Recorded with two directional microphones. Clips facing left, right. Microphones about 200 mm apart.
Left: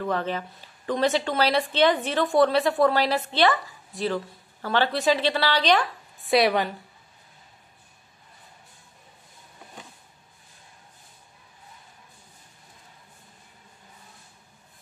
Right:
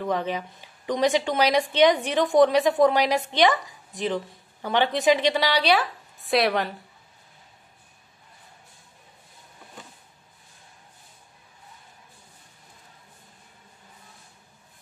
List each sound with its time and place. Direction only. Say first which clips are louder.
0.0 s a woman's voice: right 1 dB; 15° right (ahead or behind)